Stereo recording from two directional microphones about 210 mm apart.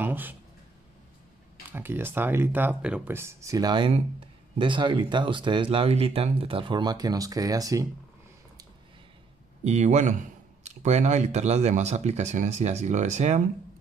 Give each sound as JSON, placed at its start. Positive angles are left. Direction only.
{"t": 0.0, "sound": "a sound", "side_deg": -10}
{"t": 1.7, "sound": "speech", "side_deg": -10}
{"t": 9.7, "sound": "speech", "side_deg": -35}